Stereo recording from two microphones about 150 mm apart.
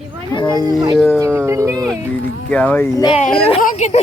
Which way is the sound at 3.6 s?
55° left (ahead or behind).